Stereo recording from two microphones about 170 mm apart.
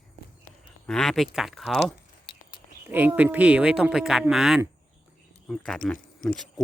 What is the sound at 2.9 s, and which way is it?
Speech, 10° right (ahead or behind).